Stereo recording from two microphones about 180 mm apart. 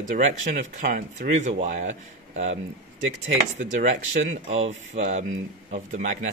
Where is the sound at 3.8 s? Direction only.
40° right (ahead or behind).